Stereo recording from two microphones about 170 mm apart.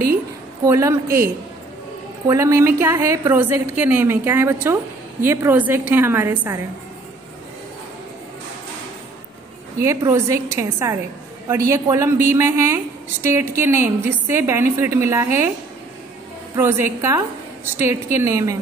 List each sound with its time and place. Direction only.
0.7 s a woman's voice: 20° right (ahead or behind)
2.2 s a woman's voice: 15° right (ahead or behind)
9.8 s a woman's voice: 15° right (ahead or behind)
16.5 s a woman's voice: 15° right (ahead or behind)